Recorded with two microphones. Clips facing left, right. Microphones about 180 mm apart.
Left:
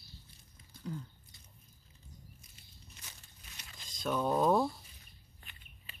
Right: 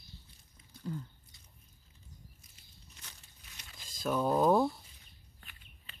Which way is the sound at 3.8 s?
5° right (ahead or behind).